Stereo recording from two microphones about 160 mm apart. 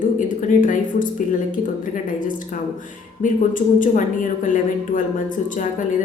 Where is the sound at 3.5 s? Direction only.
55° left (ahead or behind).